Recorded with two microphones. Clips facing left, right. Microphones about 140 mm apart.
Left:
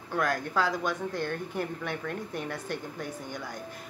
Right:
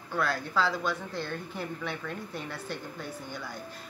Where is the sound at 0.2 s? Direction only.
45° left (ahead or behind).